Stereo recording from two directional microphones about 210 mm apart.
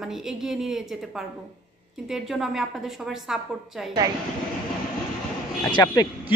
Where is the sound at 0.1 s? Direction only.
Centre (ahead or behind).